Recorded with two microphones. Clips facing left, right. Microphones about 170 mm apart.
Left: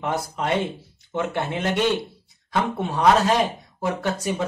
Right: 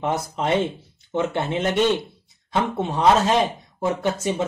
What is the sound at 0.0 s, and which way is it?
Speech, 20° right (ahead or behind).